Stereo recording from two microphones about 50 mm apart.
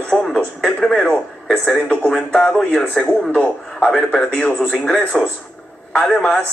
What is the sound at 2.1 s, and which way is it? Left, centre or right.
A man's voice, left.